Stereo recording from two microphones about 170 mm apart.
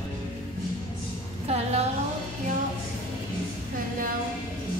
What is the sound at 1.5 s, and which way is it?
Music, 40° right (ahead or behind).